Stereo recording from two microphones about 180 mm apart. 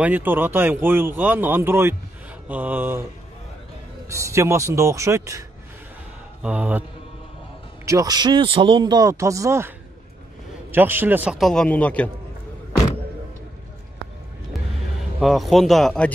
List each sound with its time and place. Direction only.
0.0 s speech: 10° right (ahead or behind)
4.1 s speech: 15° right (ahead or behind)
6.4 s speech: 10° right (ahead or behind)
7.8 s speech: 20° right (ahead or behind)
10.7 s a man's voice: 10° right (ahead or behind); by 12.1 s 5° left (ahead or behind)
15.1 s a man's voice: centre (ahead or behind)